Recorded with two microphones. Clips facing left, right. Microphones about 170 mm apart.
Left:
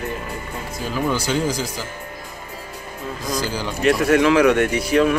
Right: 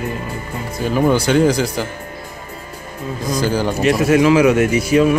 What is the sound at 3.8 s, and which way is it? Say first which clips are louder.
A man's voice: right 2 dB; 5° right (ahead or behind).